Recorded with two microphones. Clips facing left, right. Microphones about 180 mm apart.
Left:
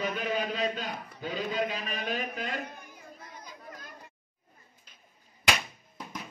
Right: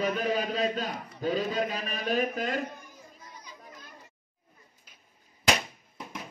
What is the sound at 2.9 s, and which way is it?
Chatter, 60° left (ahead or behind).